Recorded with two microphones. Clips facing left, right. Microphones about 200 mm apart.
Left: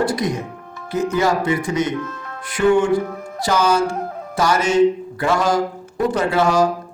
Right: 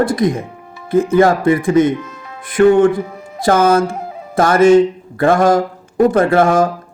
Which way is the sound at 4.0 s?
5° right (ahead or behind).